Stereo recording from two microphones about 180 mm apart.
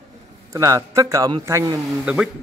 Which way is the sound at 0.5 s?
15° right (ahead or behind).